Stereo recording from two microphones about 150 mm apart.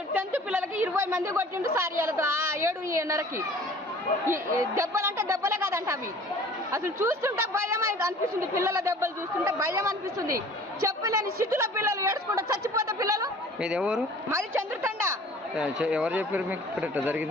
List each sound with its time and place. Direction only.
0.1 s a woman's voice: 10° right (ahead or behind)
13.6 s speech: 5° right (ahead or behind)
14.3 s a woman's voice: 15° right (ahead or behind)
15.5 s a woman's voice: 5° right (ahead or behind)